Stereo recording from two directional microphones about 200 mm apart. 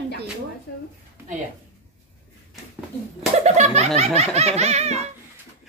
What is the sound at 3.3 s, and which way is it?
Speech, 35° right (ahead or behind).